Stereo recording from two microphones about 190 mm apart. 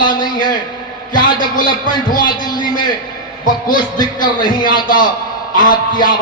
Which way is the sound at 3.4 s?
45° left (ahead or behind).